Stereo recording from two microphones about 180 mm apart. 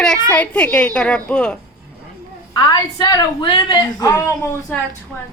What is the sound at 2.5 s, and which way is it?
A woman's voice, 25° left (ahead or behind).